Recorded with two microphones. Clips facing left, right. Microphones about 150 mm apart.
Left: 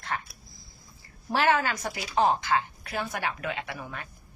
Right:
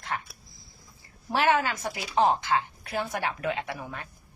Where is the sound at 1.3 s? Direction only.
20° right (ahead or behind).